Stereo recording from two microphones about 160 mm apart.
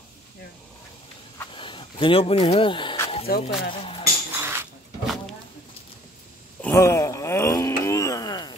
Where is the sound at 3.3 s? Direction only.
70° left (ahead or behind).